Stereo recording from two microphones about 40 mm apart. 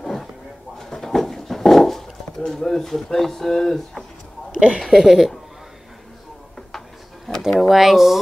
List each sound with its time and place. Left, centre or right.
0.0 s a sound: centre
4.6 s speech: right
4.8 s speech: centre
7.6 s speech: centre